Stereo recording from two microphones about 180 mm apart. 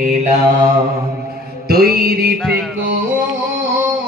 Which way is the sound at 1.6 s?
60° right (ahead or behind).